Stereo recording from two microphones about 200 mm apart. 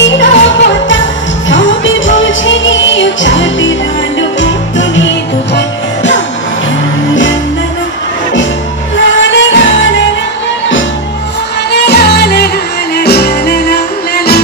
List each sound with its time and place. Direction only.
0.0 s music: 65° left (ahead or behind)
9.3 s music: 70° left (ahead or behind)
11.7 s music: 55° left (ahead or behind)